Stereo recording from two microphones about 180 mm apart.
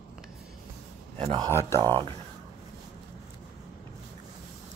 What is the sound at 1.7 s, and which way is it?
Speech, 30° right (ahead or behind).